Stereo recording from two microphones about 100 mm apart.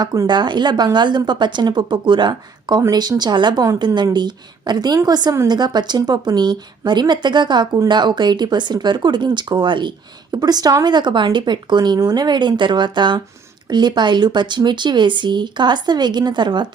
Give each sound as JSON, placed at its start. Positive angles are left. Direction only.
{"t": 0.3, "sound": "speech", "side_deg": -50}
{"t": 10.3, "sound": "speech", "side_deg": -40}